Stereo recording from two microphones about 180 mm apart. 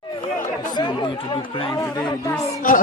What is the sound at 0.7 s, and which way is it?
Speech, 25° left (ahead or behind).